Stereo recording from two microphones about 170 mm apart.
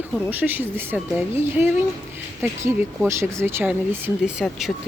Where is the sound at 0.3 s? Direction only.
10° right (ahead or behind).